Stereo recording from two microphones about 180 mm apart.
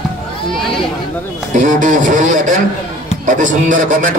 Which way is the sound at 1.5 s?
45° right (ahead or behind).